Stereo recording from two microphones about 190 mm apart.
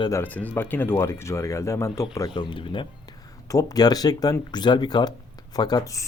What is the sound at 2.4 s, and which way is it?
A man's voice, 25° left (ahead or behind).